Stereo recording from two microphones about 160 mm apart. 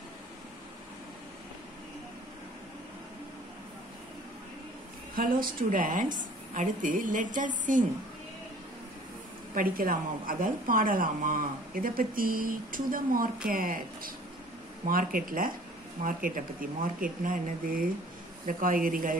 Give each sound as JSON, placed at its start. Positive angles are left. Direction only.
{"t": 5.1, "sound": "a woman's voice", "side_deg": -60}
{"t": 9.5, "sound": "a woman's voice", "side_deg": -60}